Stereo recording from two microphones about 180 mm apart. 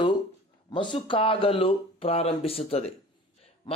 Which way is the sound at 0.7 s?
30° left (ahead or behind).